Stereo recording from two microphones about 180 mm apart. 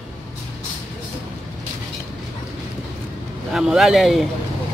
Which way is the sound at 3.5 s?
Centre (ahead or behind).